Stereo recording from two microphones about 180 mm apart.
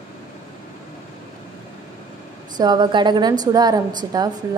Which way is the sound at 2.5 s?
25° right (ahead or behind).